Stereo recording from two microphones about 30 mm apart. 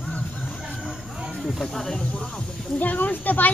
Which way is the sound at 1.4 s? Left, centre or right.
Centre.